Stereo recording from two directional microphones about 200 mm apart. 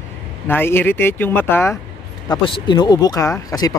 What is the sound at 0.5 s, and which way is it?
Speech, 10° left (ahead or behind).